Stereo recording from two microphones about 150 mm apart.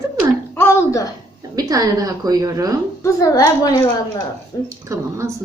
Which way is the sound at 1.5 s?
25° right (ahead or behind).